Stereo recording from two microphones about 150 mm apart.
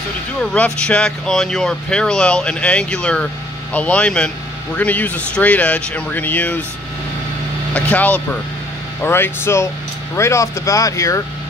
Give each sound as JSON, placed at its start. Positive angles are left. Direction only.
{"t": 0.4, "sound": "speech", "side_deg": 5}
{"t": 7.7, "sound": "speech", "side_deg": 10}